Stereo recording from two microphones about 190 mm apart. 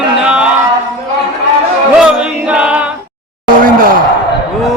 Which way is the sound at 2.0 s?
5° right (ahead or behind).